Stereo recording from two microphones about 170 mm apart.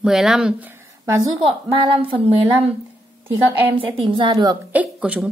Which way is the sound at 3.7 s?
30° right (ahead or behind).